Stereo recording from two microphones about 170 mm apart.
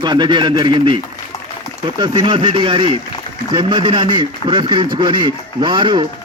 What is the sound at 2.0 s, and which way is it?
A man's voice, 25° right (ahead or behind).